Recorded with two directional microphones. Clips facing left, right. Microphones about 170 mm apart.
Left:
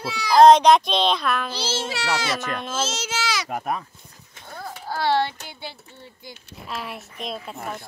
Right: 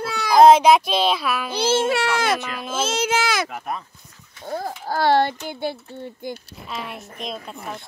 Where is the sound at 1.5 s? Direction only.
55° right (ahead or behind).